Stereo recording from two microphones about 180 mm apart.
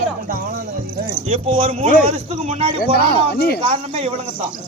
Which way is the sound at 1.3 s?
35° right (ahead or behind).